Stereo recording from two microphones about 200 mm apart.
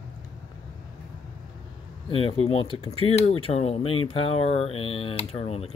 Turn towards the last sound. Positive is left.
turn(degrees=30)  # may be behind; listen again after turning